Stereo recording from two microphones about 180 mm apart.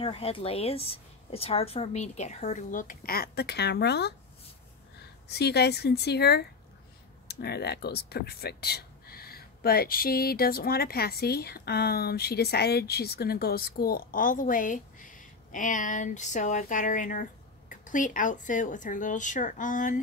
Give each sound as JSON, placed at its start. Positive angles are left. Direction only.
{"t": 0.0, "sound": "speech", "side_deg": 30}
{"t": 5.3, "sound": "speech", "side_deg": 65}